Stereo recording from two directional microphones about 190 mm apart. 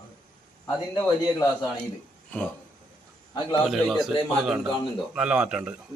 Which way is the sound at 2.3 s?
10° left (ahead or behind).